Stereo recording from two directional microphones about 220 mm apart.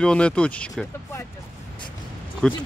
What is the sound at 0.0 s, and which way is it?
Speech, 5° left (ahead or behind).